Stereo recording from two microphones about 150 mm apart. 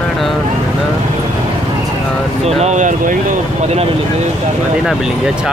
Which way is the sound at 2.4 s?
50° right (ahead or behind).